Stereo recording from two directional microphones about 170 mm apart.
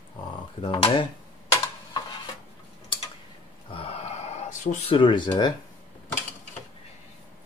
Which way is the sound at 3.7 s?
35° left (ahead or behind).